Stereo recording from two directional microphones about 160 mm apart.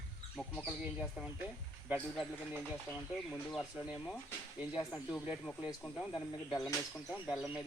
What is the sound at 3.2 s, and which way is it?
Speech, centre (ahead or behind).